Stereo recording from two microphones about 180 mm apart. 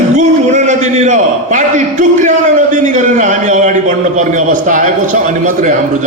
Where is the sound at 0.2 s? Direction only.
40° right (ahead or behind).